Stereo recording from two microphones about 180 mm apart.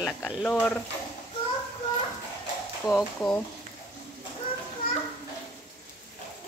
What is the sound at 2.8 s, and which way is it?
Speech, 5° left (ahead or behind).